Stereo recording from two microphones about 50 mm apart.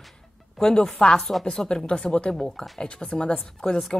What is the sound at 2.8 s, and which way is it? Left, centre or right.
Speech, left.